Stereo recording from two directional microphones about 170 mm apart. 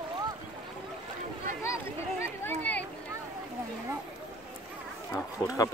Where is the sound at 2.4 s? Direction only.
10° left (ahead or behind).